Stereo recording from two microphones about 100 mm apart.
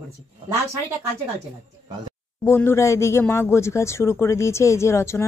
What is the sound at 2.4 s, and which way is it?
Speech, 25° left (ahead or behind).